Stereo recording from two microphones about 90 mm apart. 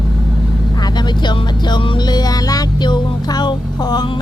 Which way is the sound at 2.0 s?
50° left (ahead or behind).